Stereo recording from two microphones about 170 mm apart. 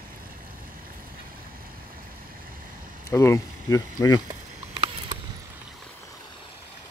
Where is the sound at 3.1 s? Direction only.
15° left (ahead or behind).